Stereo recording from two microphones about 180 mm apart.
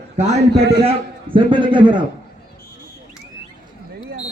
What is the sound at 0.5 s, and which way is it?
Speech, 65° right (ahead or behind).